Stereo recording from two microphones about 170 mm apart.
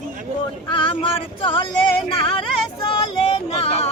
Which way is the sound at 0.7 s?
30° left (ahead or behind).